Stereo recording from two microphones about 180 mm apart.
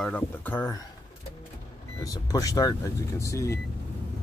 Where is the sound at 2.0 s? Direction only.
20° left (ahead or behind).